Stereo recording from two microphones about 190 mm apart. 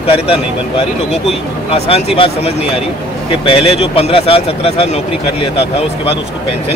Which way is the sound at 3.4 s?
30° left (ahead or behind).